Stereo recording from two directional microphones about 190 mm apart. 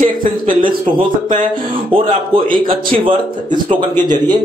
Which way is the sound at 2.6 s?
30° right (ahead or behind).